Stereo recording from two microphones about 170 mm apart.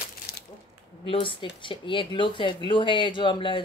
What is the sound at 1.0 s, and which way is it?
Speech, 30° left (ahead or behind).